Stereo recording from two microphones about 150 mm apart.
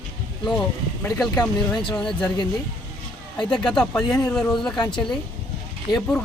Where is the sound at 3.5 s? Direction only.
5° left (ahead or behind).